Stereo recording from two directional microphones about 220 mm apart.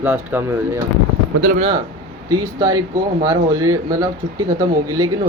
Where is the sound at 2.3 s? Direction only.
15° right (ahead or behind).